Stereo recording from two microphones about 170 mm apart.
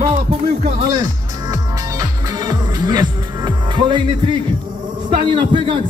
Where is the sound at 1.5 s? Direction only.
25° right (ahead or behind).